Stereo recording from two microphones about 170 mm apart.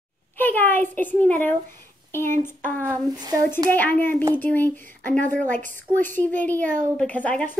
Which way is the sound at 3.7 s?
10° left (ahead or behind).